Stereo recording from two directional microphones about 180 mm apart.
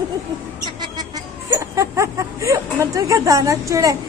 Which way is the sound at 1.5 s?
15° right (ahead or behind).